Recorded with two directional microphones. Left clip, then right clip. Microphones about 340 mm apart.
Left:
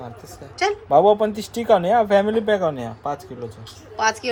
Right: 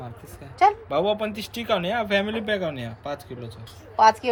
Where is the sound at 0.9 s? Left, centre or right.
Left.